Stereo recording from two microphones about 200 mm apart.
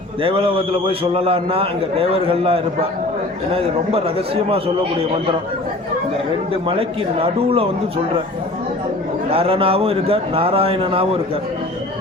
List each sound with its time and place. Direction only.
0.2 s a man's voice: 25° right (ahead or behind)
6.7 s a man's voice: 30° right (ahead or behind)
9.3 s a man's voice: 25° right (ahead or behind)